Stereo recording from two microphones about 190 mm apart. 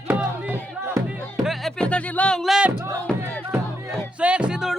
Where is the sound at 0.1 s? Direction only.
10° right (ahead or behind).